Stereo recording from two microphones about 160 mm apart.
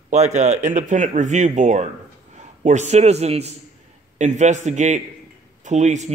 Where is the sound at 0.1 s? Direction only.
45° right (ahead or behind).